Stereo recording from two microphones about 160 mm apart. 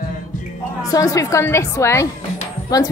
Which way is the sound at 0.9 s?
20° left (ahead or behind).